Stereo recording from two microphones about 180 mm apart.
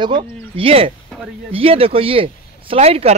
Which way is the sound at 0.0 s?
30° right (ahead or behind).